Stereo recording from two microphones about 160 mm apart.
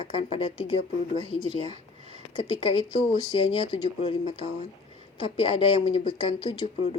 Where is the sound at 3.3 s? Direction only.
30° left (ahead or behind).